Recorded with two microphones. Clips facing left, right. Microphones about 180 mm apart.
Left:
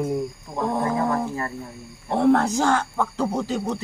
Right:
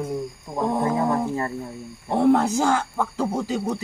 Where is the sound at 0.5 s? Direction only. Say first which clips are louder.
Right 1 dB; 10° right (ahead or behind).